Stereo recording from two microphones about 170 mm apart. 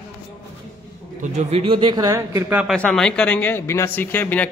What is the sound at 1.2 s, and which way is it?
A man's voice, 40° right (ahead or behind).